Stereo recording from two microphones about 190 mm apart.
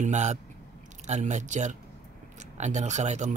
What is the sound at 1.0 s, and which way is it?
Speech, 40° right (ahead or behind).